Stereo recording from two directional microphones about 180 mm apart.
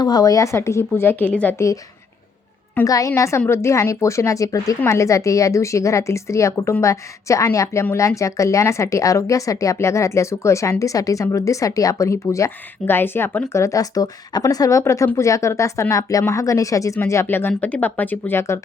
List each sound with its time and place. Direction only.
0.0 s a woman's voice: 20° left (ahead or behind)